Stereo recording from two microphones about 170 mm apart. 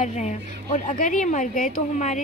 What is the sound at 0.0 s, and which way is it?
A woman's voice, 45° left (ahead or behind).